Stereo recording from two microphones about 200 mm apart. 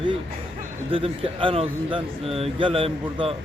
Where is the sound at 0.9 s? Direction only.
25° right (ahead or behind).